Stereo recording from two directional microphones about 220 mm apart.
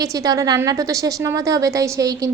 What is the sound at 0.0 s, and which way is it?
A woman's voice, 15° right (ahead or behind).